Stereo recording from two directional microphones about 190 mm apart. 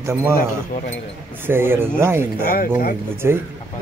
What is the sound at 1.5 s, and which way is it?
Speech, 10° right (ahead or behind).